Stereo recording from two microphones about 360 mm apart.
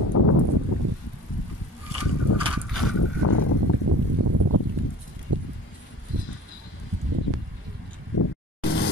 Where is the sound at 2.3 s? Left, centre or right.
Left.